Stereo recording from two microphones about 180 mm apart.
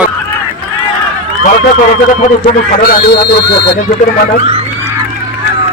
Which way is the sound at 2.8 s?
60° left (ahead or behind).